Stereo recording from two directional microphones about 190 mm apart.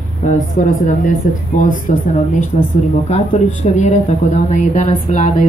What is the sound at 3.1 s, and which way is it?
Speech, 35° left (ahead or behind).